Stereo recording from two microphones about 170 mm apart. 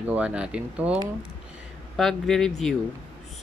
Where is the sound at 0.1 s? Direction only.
5° right (ahead or behind).